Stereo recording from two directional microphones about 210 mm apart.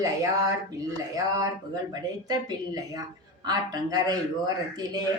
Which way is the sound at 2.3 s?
20° right (ahead or behind).